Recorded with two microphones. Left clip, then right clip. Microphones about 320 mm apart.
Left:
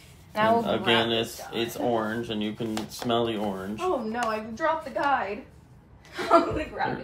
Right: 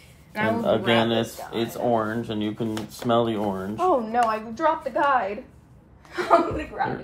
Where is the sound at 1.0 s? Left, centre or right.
Centre.